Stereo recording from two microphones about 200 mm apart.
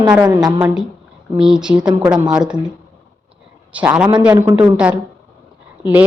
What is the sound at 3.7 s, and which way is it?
A woman's voice, 5° right (ahead or behind).